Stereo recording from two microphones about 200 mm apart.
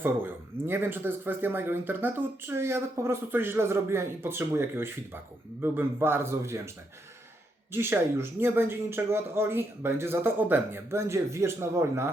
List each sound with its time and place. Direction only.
0.0 s speech: 10° right (ahead or behind)
7.7 s speech: 10° right (ahead or behind)